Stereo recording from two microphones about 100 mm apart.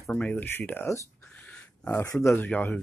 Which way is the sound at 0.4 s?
20° left (ahead or behind).